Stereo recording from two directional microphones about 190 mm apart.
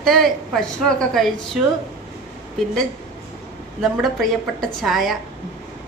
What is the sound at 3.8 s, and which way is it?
A woman's voice, centre (ahead or behind).